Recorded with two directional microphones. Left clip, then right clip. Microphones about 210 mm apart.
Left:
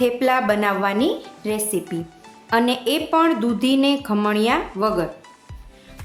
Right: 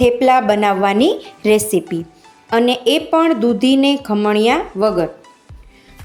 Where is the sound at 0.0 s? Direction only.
20° right (ahead or behind).